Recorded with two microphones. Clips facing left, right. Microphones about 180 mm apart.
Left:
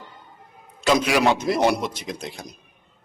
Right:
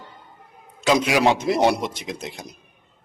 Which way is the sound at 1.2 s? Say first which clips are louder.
Right 1 dB; 25° right (ahead or behind).